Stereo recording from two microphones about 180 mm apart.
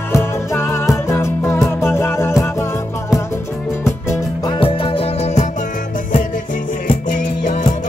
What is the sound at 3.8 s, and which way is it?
Music, 15° left (ahead or behind).